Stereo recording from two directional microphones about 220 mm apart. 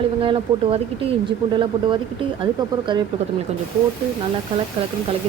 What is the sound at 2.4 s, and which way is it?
Speech, 20° right (ahead or behind).